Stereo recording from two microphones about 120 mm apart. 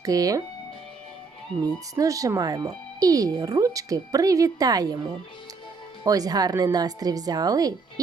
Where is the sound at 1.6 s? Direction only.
30° right (ahead or behind).